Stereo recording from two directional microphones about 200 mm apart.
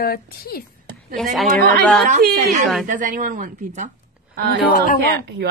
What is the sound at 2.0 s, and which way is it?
Speech, 40° right (ahead or behind).